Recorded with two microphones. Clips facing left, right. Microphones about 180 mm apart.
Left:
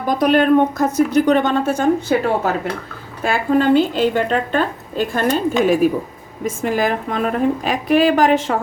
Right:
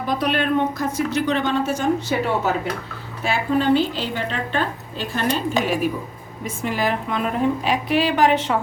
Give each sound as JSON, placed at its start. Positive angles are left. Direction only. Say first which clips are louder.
{"t": 0.1, "sound": "a woman's voice", "louder": "left 8 dB", "side_deg": 45}